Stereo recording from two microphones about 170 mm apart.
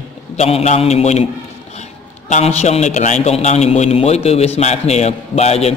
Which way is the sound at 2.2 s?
45° left (ahead or behind).